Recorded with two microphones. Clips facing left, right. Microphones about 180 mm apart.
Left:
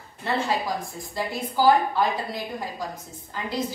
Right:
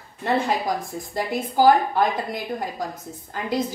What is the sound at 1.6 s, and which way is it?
A woman's voice, 45° right (ahead or behind).